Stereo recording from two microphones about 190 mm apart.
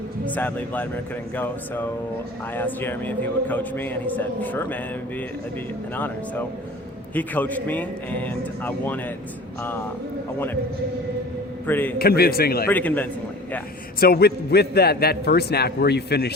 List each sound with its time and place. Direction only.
0.3 s a man's voice: 10° left (ahead or behind)
10.3 s a man's voice: 10° left (ahead or behind)
11.6 s a man's voice: 10° left (ahead or behind)
11.9 s a man's voice: 55° left (ahead or behind)
12.6 s a man's voice: 10° left (ahead or behind)
14.0 s a man's voice: 55° left (ahead or behind)